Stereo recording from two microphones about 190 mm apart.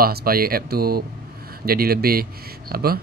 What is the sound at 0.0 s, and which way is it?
Speech, 50° right (ahead or behind).